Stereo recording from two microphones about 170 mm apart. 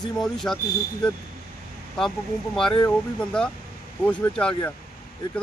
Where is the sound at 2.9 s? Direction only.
5° left (ahead or behind).